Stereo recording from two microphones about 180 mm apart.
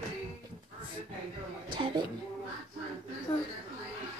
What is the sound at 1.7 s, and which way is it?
Speech, 25° right (ahead or behind).